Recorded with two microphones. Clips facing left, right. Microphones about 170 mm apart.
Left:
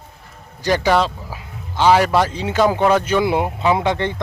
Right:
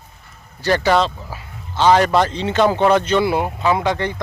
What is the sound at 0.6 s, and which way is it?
Speech, 10° left (ahead or behind).